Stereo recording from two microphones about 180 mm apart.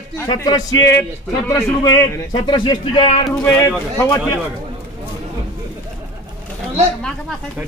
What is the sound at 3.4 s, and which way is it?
Speech, 15° left (ahead or behind).